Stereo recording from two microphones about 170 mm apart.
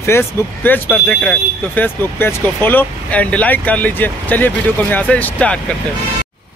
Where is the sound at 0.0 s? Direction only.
15° left (ahead or behind).